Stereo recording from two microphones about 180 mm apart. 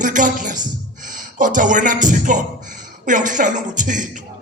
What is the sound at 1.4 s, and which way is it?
A man's voice, 45° right (ahead or behind).